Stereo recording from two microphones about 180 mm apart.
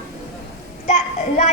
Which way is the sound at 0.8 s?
40° left (ahead or behind).